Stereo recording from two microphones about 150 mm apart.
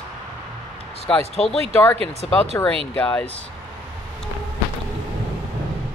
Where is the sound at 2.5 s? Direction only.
20° left (ahead or behind).